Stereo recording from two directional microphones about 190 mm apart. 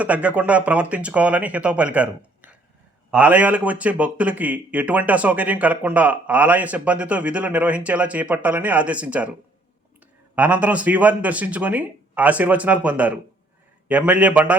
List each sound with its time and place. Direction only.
0.0 s a man's voice: 5° right (ahead or behind)
10.3 s a man's voice: 10° right (ahead or behind)